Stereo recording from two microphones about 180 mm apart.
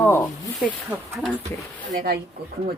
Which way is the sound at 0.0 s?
10° left (ahead or behind).